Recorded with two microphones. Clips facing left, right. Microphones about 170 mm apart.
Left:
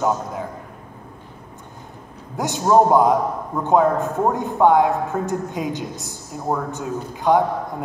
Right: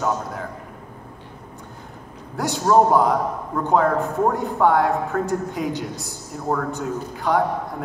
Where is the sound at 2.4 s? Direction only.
20° left (ahead or behind).